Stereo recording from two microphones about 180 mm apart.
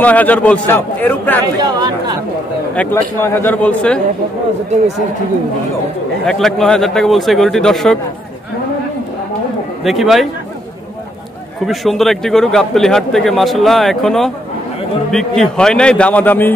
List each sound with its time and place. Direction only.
0.0 s a man's voice: 10° left (ahead or behind)
1.6 s speech: 25° right (ahead or behind)
2.7 s a man's voice: 10° left (ahead or behind)
6.2 s a man's voice: centre (ahead or behind)
9.8 s a man's voice: centre (ahead or behind)
11.6 s a man's voice: centre (ahead or behind)